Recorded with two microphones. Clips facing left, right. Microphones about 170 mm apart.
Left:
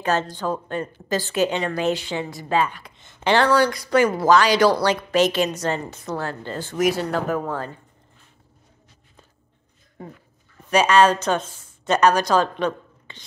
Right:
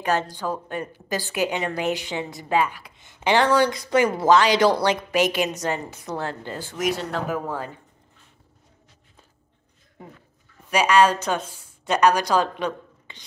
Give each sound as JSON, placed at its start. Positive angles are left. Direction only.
{"t": 0.0, "sound": "a woman's voice", "side_deg": -15}
{"t": 6.8, "sound": "speech", "side_deg": 5}
{"t": 7.2, "sound": "a woman's voice", "side_deg": -10}
{"t": 10.7, "sound": "speech", "side_deg": -10}